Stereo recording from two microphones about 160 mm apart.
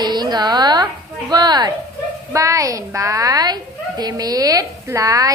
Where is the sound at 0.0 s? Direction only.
25° right (ahead or behind).